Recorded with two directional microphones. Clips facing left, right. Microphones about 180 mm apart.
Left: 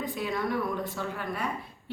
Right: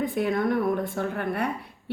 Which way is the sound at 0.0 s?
55° right (ahead or behind).